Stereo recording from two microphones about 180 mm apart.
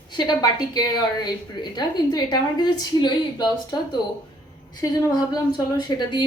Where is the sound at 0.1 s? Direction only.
25° left (ahead or behind).